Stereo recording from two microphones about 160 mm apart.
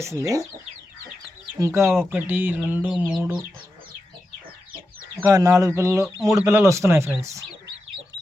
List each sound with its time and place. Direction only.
0.0 s speech: 20° right (ahead or behind)
1.5 s speech: 20° right (ahead or behind)
5.3 s speech: 20° right (ahead or behind)